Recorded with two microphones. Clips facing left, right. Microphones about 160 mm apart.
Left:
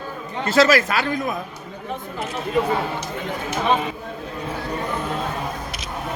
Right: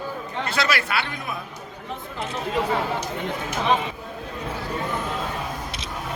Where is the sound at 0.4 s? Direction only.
40° left (ahead or behind).